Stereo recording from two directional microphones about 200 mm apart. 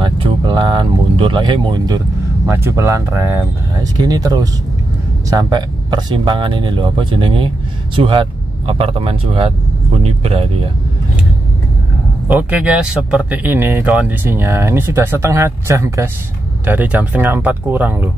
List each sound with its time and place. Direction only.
0.0 s vehicle: 20° right (ahead or behind)
2.5 s speech: 15° right (ahead or behind); by 10.5 s 30° right (ahead or behind)
12.3 s speech: 5° right (ahead or behind)